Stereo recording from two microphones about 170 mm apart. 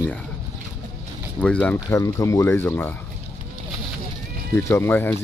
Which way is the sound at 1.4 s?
10° left (ahead or behind).